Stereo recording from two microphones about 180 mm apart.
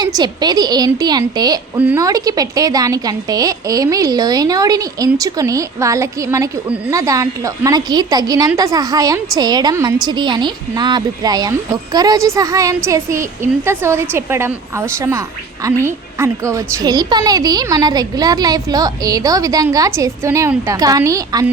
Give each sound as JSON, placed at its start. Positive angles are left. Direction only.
{"t": 0.0, "sound": "a woman's voice", "side_deg": -20}
{"t": 1.7, "sound": "a woman's voice", "side_deg": -10}